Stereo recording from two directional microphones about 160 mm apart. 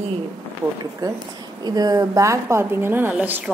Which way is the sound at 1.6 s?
25° right (ahead or behind).